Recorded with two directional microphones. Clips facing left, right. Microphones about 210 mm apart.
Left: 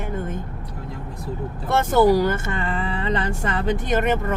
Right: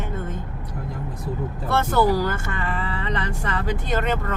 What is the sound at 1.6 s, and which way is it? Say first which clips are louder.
Speech: left 4 dB; 20° left (ahead or behind).